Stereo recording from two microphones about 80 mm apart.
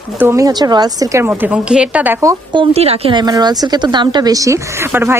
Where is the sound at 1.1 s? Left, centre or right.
Right.